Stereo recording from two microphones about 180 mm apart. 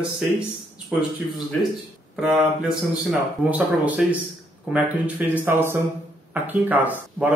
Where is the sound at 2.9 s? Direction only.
5° right (ahead or behind).